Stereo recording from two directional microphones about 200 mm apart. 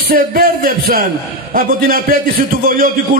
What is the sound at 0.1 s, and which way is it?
A man's voice, 45° right (ahead or behind).